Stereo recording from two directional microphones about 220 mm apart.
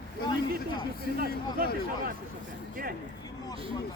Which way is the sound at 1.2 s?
40° right (ahead or behind).